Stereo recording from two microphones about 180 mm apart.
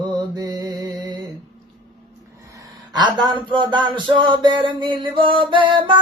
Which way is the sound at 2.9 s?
25° right (ahead or behind).